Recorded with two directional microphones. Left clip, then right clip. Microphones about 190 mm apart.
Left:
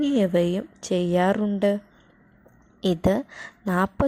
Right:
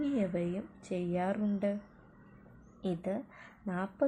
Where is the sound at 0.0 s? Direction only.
35° left (ahead or behind).